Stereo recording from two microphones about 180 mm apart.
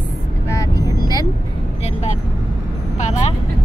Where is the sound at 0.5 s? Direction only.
20° left (ahead or behind).